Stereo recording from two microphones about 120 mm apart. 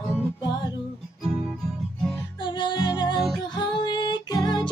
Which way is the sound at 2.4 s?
40° left (ahead or behind).